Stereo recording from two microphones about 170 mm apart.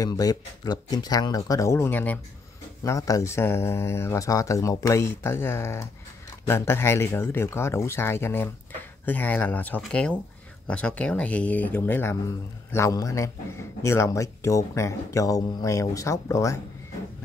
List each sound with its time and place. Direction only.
0.0 s speech: 25° left (ahead or behind)